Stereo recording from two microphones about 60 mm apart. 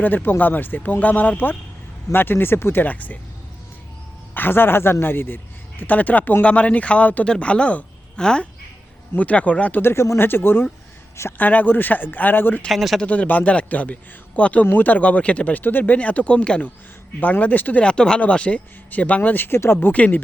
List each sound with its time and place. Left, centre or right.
0.0 s speech: left
4.4 s a man's voice: left
9.8 s speech: left
12.6 s speech: centre
13.0 s a man's voice: left
17.4 s a man's voice: left
17.8 s a man's voice: centre; by 19.9 s left
19.9 s a man's voice: left